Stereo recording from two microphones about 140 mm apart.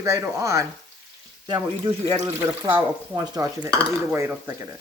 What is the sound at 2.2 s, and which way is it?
Speech, 20° right (ahead or behind).